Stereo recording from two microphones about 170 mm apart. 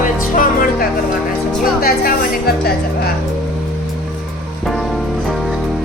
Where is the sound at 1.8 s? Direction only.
60° left (ahead or behind).